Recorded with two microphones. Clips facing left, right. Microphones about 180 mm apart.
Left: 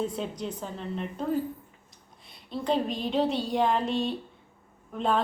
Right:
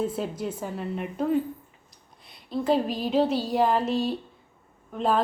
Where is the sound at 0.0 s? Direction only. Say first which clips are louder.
Right 3 dB; 5° right (ahead or behind).